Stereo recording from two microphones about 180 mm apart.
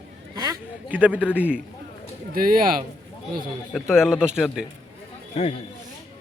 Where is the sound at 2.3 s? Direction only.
55° right (ahead or behind).